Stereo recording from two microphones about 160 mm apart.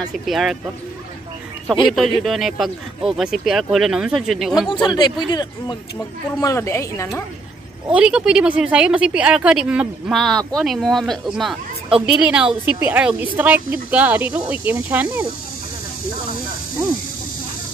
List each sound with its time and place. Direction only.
0.3 s speech: centre (ahead or behind)
1.9 s speech: centre (ahead or behind)
4.8 s speech: 25° left (ahead or behind)
7.9 s speech: 5° right (ahead or behind)